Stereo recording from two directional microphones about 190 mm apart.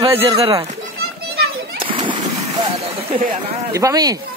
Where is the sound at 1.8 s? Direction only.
25° right (ahead or behind).